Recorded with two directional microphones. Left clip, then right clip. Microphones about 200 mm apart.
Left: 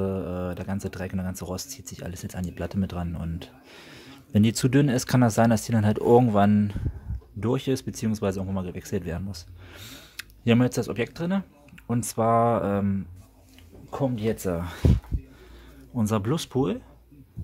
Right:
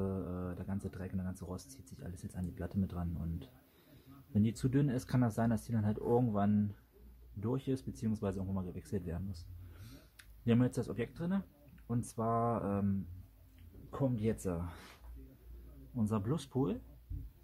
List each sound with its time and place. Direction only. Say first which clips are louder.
0.0 s speech: left 12 dB; 20° left (ahead or behind)
13.8 s speech: left 9 dB; 10° left (ahead or behind)
14.5 s speech: left 12 dB; 25° left (ahead or behind)
16.0 s speech: left 11 dB; 25° left (ahead or behind)